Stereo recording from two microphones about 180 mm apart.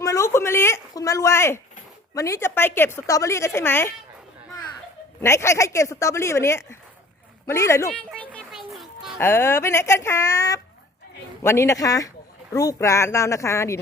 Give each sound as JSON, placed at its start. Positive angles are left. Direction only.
{"t": 0.0, "sound": "a sound", "side_deg": 15}
{"t": 2.1, "sound": "a woman's voice", "side_deg": 15}
{"t": 5.2, "sound": "a woman's voice", "side_deg": 15}
{"t": 8.1, "sound": "music", "side_deg": 5}
{"t": 9.1, "sound": "a woman's voice", "side_deg": 15}